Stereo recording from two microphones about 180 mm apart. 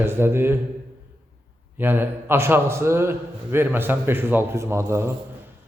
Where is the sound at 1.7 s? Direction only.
10° right (ahead or behind).